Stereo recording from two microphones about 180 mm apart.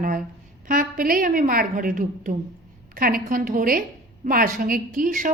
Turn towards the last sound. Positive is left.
turn(degrees=-50)  # may be behind; listen again after turning